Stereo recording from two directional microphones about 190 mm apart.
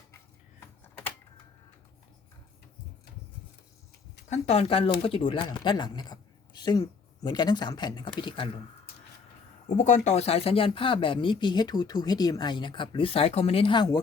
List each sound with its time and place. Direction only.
0.6 s a sound: 15° left (ahead or behind)
4.3 s speech: 35° left (ahead or behind)
9.6 s speech: 40° left (ahead or behind); by 14.0 s 20° left (ahead or behind)